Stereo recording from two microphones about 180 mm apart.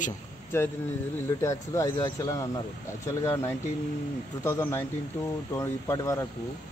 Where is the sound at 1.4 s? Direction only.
15° left (ahead or behind).